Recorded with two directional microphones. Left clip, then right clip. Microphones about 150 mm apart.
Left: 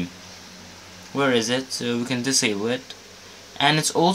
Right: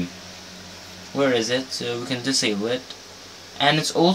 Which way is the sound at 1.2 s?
40° left (ahead or behind).